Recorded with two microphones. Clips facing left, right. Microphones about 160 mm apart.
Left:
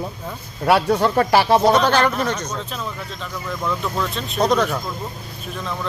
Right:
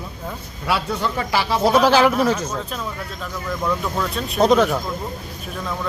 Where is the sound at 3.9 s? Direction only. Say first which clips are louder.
Right 1 dB; centre (ahead or behind).